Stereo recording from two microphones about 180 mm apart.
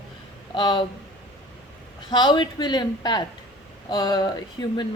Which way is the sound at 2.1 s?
25° left (ahead or behind).